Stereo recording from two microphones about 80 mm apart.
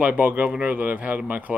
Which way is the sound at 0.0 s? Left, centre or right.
Centre.